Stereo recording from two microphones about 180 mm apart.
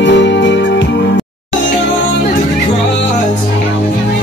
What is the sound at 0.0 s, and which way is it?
Music, 80° left.